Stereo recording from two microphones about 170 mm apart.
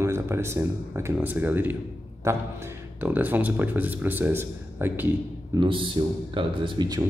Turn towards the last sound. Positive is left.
turn(degrees=-25)  # may be behind; listen again after turning